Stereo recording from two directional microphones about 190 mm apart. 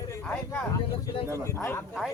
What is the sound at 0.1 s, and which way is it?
Speech, 10° left (ahead or behind).